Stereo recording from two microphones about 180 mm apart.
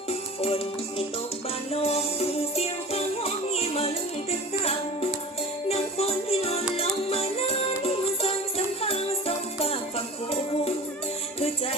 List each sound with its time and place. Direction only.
0.1 s music: 35° left (ahead or behind)
5.6 s music: 35° left (ahead or behind)